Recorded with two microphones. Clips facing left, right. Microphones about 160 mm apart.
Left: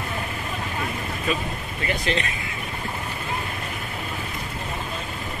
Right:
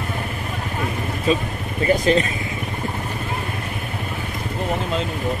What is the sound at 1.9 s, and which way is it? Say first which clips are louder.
Speech: right 9 dB; 40° right (ahead or behind).